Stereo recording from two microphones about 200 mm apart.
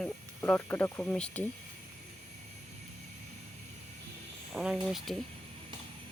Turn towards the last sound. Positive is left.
turn(degrees=0)  # may be behind; listen again after turning